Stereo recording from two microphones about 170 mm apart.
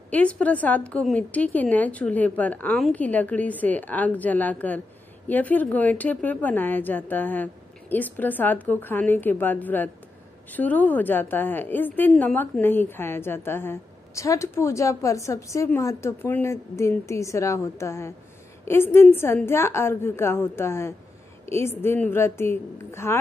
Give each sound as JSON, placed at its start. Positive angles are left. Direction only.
{"t": 0.1, "sound": "a woman's voice", "side_deg": 10}